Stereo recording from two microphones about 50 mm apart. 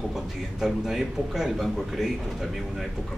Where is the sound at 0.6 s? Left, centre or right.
Centre.